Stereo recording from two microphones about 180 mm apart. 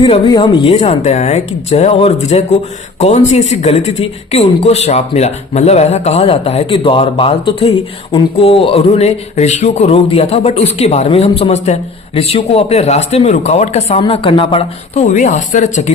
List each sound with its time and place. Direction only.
0.0 s speech: 25° left (ahead or behind); by 15.9 s 40° left (ahead or behind)